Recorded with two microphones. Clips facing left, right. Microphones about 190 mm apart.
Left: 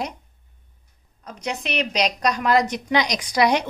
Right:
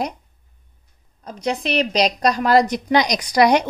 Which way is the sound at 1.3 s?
35° right (ahead or behind).